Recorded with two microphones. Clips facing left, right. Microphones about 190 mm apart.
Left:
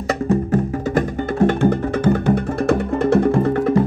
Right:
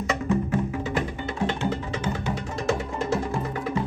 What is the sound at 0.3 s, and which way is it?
Music, 45° left (ahead or behind).